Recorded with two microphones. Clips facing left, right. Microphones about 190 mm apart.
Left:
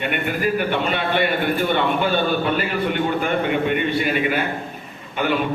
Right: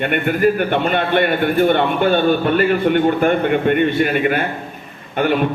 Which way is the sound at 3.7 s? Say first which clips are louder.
Right 5 dB; 50° right (ahead or behind).